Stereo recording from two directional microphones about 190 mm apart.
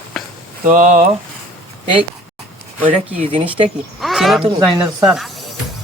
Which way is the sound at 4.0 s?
Centre (ahead or behind).